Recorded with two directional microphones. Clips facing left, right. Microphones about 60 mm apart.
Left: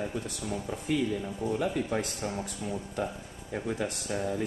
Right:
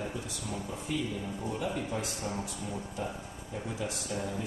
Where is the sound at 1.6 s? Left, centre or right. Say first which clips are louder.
Left 3 dB; left.